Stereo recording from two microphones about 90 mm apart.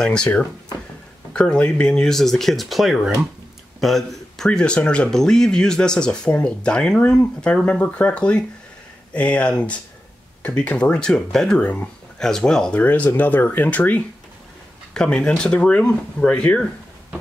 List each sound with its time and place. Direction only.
0.0 s speech: 10° left (ahead or behind)
12.8 s speech: 20° left (ahead or behind)